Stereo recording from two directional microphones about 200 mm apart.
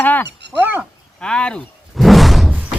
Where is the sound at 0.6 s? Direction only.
10° right (ahead or behind).